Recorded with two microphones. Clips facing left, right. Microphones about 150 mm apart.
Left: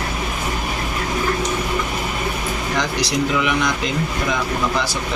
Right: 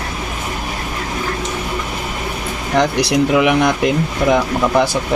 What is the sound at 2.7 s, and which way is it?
Speech, 60° right (ahead or behind).